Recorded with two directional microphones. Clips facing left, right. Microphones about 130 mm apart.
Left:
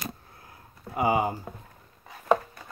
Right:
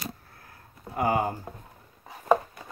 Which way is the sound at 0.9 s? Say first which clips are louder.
Left 1 dB; 10° left (ahead or behind).